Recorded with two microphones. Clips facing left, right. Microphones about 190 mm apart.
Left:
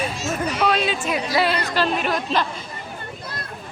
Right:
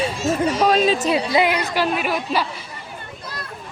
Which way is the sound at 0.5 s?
40° right (ahead or behind).